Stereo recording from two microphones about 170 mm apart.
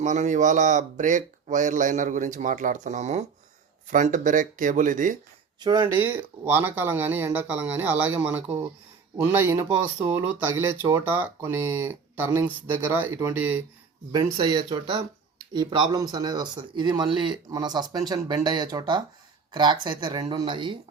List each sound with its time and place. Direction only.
0.0 s speech: 45° right (ahead or behind)
5.5 s speech: 25° right (ahead or behind)
14.1 s speech: 25° right (ahead or behind)